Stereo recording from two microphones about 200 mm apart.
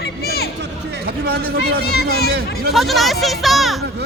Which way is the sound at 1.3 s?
50° right (ahead or behind).